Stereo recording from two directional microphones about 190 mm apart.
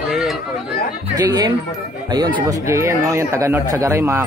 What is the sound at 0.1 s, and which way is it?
Chatter, centre (ahead or behind).